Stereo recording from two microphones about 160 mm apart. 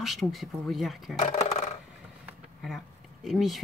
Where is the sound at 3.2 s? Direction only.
Centre (ahead or behind).